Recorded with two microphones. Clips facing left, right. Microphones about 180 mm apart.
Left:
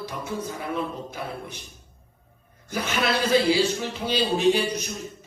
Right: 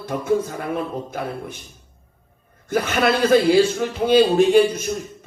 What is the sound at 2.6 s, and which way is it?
Speech, 50° right (ahead or behind).